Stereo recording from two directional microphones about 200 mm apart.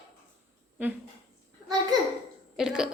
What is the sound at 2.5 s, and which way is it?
Speech, 5° right (ahead or behind).